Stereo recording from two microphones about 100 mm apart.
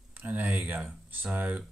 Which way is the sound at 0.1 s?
15° right (ahead or behind).